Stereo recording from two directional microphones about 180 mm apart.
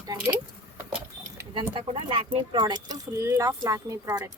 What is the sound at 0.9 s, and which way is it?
Vehicle, 5° right (ahead or behind).